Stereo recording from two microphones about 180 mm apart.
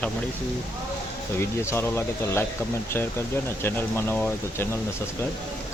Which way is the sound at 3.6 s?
15° left (ahead or behind).